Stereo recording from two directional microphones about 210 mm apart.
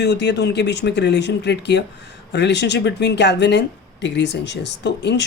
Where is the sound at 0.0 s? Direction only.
55° left (ahead or behind).